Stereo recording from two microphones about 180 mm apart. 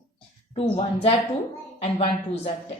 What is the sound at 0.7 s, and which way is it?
Speech, 30° left (ahead or behind).